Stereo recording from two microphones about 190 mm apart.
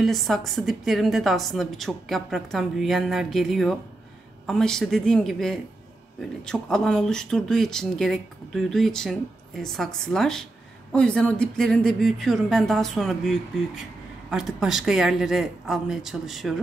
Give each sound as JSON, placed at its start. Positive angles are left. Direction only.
{"t": 0.0, "sound": "speech", "side_deg": 0}